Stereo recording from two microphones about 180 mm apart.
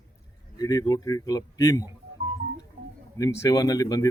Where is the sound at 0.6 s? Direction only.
20° left (ahead or behind).